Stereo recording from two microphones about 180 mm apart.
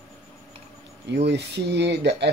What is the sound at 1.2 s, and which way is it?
Speech, 70° right (ahead or behind).